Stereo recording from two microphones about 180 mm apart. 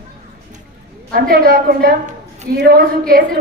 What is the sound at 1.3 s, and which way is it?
A woman's voice, 55° right (ahead or behind).